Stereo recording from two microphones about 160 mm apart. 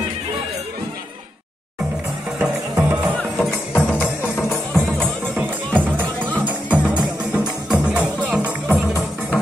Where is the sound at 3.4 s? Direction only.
5° left (ahead or behind).